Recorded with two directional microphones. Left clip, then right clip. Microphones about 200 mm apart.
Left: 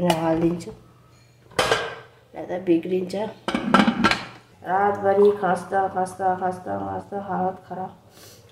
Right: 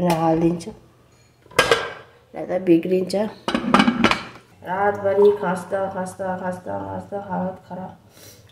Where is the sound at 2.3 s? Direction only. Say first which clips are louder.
Right 4 dB; 20° right (ahead or behind).